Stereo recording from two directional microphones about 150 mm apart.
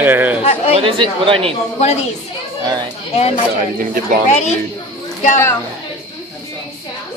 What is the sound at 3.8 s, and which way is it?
Speech, 65° right (ahead or behind).